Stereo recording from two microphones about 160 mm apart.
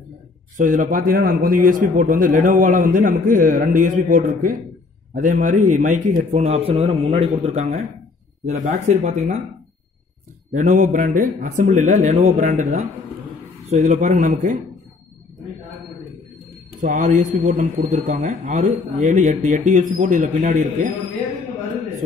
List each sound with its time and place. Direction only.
0.6 s a man's voice: 55° right (ahead or behind)
10.5 s speech: 50° right (ahead or behind)
16.8 s speech: 50° right (ahead or behind)